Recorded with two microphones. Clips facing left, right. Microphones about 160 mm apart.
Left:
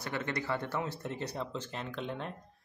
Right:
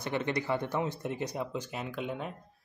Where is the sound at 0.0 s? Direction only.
20° right (ahead or behind).